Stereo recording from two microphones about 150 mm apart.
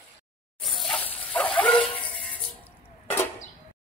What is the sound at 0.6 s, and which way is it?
Dog, centre (ahead or behind).